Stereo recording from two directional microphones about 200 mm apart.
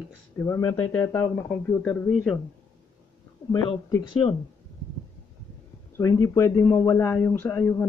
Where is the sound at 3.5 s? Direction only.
20° left (ahead or behind).